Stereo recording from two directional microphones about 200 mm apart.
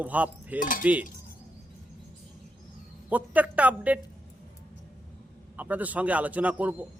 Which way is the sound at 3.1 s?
10° right (ahead or behind).